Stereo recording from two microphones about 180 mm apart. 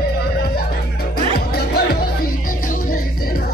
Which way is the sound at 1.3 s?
60° left (ahead or behind).